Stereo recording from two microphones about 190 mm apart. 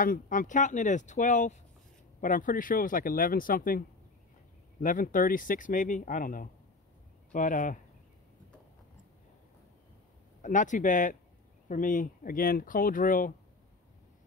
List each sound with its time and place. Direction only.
0.0 s speech: 45° left (ahead or behind)
4.8 s speech: 45° left (ahead or behind)
10.4 s speech: 40° left (ahead or behind)